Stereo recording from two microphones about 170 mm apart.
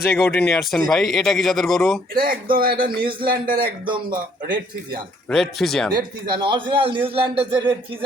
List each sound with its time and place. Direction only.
0.1 s speech: 10° left (ahead or behind)
2.1 s speech: 55° right (ahead or behind)
3.8 s a man's voice: 30° right (ahead or behind)
5.3 s speech: centre (ahead or behind)
6.2 s a man's voice: 30° right (ahead or behind)